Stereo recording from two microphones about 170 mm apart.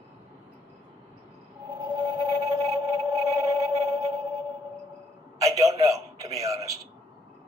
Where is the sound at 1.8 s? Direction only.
25° right (ahead or behind).